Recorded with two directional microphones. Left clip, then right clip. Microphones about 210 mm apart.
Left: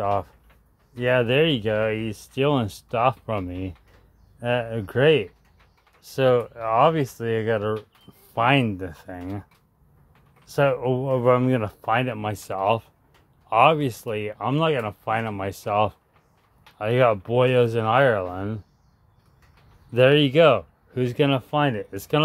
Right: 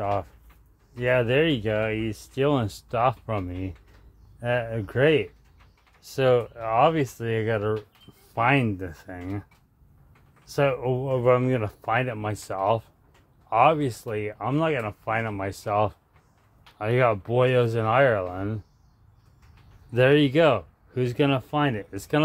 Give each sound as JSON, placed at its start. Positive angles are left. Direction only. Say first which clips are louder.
{"t": 0.0, "sound": "speech", "louder": "left 3 dB", "side_deg": 10}
{"t": 10.5, "sound": "speech", "louder": "left 3 dB", "side_deg": 10}
{"t": 19.9, "sound": "speech", "louder": "left 2 dB", "side_deg": 5}